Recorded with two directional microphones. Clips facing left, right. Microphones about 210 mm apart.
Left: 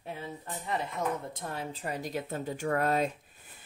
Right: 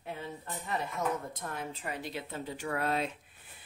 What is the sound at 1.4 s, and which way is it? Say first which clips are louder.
Speech: left 2 dB; 30° left (ahead or behind).